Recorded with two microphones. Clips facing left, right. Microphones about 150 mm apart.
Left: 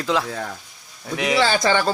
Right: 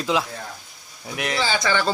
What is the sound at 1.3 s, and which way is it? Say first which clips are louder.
Speech: left 5 dB; 60° left (ahead or behind).